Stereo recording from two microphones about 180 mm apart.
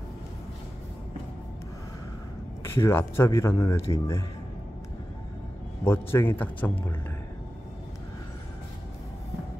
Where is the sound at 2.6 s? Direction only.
15° left (ahead or behind).